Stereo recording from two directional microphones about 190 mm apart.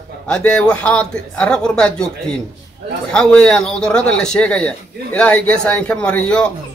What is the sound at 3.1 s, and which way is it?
A man's voice, 5° left (ahead or behind).